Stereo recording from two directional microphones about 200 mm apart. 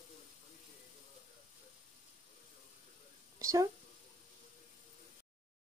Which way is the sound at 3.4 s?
15° right (ahead or behind).